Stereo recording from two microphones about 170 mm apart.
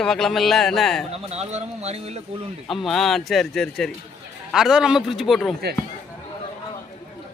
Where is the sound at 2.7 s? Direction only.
Centre (ahead or behind).